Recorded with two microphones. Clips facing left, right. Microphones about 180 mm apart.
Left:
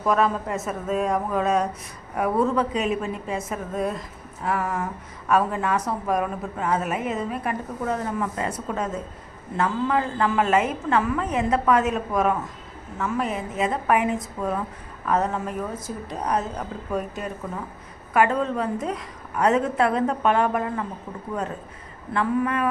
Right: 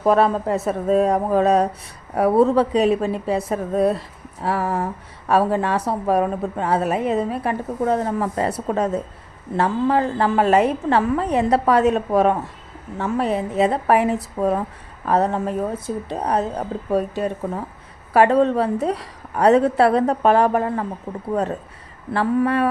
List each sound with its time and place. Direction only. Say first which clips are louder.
0.0 s a woman's voice: right 5 dB; 35° right (ahead or behind)
14.4 s speech: right 10 dB; 50° right (ahead or behind)
15.0 s a woman's voice: right 5 dB; 35° right (ahead or behind)